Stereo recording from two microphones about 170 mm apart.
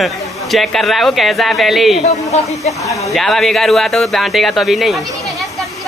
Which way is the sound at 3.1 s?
Centre (ahead or behind).